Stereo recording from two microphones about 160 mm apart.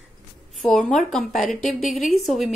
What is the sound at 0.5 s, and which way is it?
A woman's voice, 5° left (ahead or behind).